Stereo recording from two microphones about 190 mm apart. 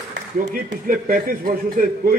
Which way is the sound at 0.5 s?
40° right (ahead or behind).